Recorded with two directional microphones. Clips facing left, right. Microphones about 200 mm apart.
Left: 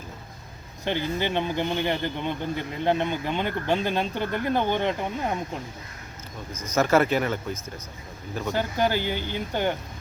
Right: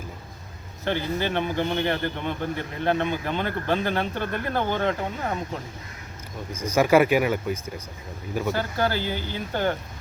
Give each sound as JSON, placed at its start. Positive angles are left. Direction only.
{"t": 0.9, "sound": "a man's voice", "side_deg": 15}
{"t": 6.7, "sound": "speech", "side_deg": -10}
{"t": 8.5, "sound": "a man's voice", "side_deg": 15}